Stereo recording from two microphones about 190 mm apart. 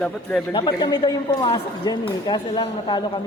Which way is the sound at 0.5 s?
25° left (ahead or behind).